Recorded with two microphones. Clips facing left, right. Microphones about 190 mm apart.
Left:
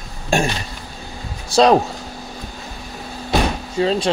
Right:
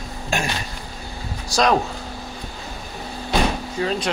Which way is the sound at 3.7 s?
25° left (ahead or behind).